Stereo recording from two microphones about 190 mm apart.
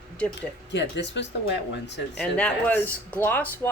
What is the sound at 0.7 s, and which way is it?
Speech, 65° left (ahead or behind).